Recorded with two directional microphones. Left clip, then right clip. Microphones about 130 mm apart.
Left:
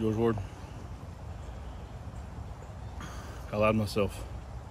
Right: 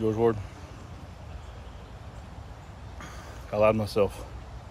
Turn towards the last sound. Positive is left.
turn(degrees=15)  # may be behind; listen again after turning